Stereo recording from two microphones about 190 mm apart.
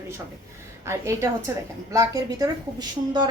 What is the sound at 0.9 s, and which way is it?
A woman's voice, 15° right (ahead or behind).